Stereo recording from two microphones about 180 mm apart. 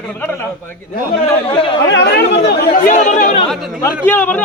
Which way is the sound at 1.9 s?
70° left (ahead or behind).